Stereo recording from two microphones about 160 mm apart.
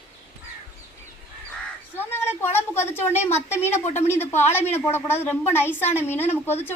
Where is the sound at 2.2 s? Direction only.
15° left (ahead or behind).